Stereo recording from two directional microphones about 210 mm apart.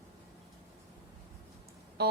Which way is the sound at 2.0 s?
50° right (ahead or behind).